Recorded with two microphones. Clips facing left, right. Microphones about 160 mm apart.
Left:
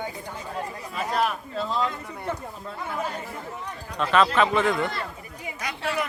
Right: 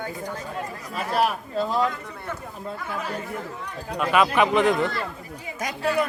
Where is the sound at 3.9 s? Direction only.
10° right (ahead or behind).